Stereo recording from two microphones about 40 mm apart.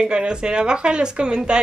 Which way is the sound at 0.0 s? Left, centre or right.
Right.